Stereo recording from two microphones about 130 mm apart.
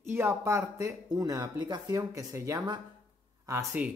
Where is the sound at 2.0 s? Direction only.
25° right (ahead or behind).